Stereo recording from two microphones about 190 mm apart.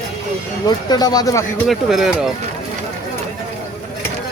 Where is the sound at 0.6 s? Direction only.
20° left (ahead or behind).